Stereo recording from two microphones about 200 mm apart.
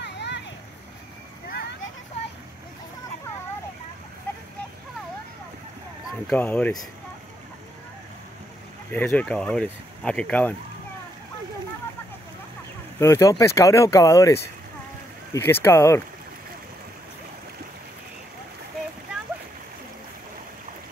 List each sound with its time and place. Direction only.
0.0 s a sound: 60° left (ahead or behind)
6.2 s speech: 5° left (ahead or behind)
8.9 s speech: 5° left (ahead or behind)
13.0 s speech: 15° left (ahead or behind)